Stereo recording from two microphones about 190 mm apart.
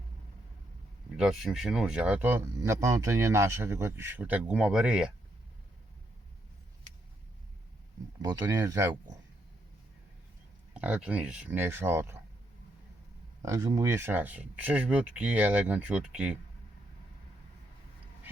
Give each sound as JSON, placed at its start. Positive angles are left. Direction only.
{"t": 1.1, "sound": "speech", "side_deg": 0}
{"t": 8.2, "sound": "speech", "side_deg": -20}
{"t": 10.8, "sound": "speech", "side_deg": -5}
{"t": 13.4, "sound": "speech", "side_deg": -20}